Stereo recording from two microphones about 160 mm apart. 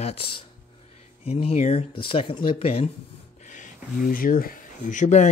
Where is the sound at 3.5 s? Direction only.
50° left (ahead or behind).